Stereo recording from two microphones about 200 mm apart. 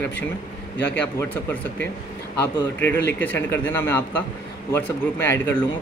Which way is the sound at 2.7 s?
10° left (ahead or behind).